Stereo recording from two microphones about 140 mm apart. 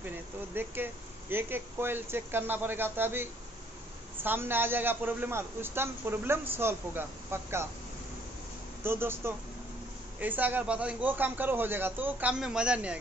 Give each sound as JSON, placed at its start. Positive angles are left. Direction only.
{"t": 0.0, "sound": "a sound", "side_deg": -15}
{"t": 1.3, "sound": "a man's voice", "side_deg": -15}
{"t": 8.8, "sound": "a man's voice", "side_deg": -15}